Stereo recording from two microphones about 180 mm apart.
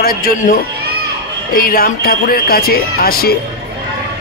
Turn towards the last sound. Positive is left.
turn(degrees=55)  # may be behind; listen again after turning